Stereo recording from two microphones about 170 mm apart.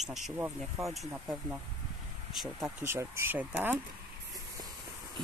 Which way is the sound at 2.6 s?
15° right (ahead or behind).